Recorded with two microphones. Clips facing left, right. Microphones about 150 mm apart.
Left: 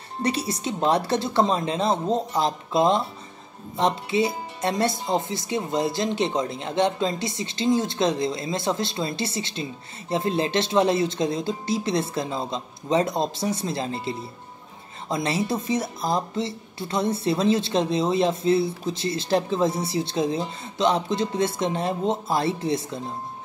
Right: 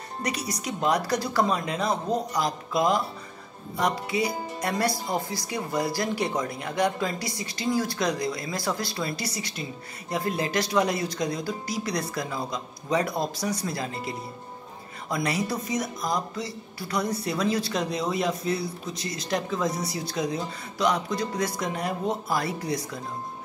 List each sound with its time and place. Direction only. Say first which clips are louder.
0.2 s speech: left 6 dB; 30° left (ahead or behind)